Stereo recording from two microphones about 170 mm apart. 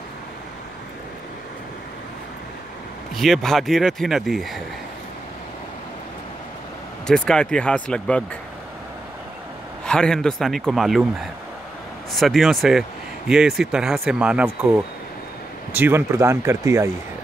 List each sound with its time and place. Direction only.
3.2 s speech: centre (ahead or behind)
7.1 s speech: 5° left (ahead or behind)
9.8 s speech: 5° left (ahead or behind)
12.1 s speech: centre (ahead or behind); by 16.9 s 15° right (ahead or behind)